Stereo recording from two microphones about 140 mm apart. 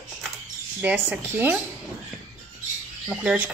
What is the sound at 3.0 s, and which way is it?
Speech, 10° right (ahead or behind).